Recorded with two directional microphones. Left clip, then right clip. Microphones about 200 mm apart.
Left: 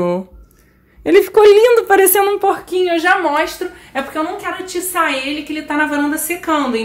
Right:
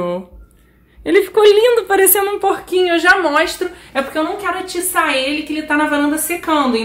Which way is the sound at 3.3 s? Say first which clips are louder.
Right 2 dB; centre (ahead or behind).